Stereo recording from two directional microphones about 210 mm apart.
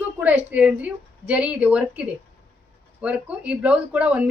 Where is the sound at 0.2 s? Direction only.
10° right (ahead or behind).